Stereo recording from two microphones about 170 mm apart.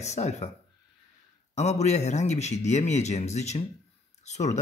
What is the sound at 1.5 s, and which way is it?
Speech, 40° left (ahead or behind).